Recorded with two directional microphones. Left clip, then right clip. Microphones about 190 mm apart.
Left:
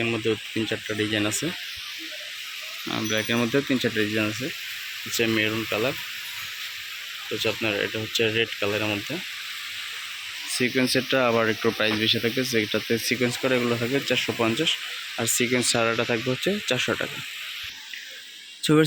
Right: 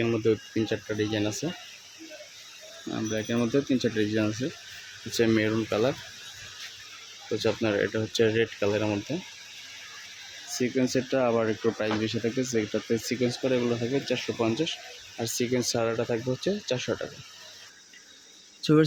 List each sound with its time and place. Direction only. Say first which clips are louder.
0.0 s speech: even; 15° right (ahead or behind)
3.1 s speech: left 4 dB; centre (ahead or behind)
5.1 s speech: left 1 dB; 20° right (ahead or behind)
7.3 s speech: left 1 dB; 20° right (ahead or behind)
10.6 s speech: left 4 dB; centre (ahead or behind)
18.6 s speech: left 2 dB; 5° left (ahead or behind)